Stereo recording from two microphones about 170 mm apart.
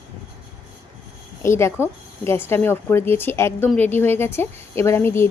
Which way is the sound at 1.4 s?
15° left (ahead or behind).